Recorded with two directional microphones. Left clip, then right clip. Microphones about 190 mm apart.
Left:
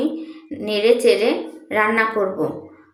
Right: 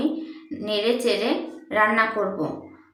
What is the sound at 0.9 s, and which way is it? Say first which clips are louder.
A woman's voice: left 9 dB; 15° left (ahead or behind).